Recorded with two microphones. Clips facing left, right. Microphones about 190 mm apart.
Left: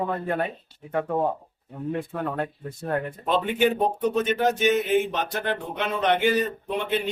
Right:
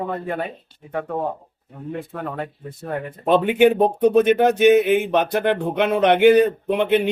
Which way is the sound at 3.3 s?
60° right (ahead or behind).